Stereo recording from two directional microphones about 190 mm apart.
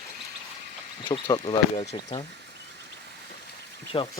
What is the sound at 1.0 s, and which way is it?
Speech, 25° left (ahead or behind).